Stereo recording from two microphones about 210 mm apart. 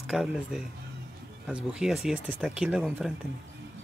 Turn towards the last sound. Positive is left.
turn(degrees=-5)  # may be behind; listen again after turning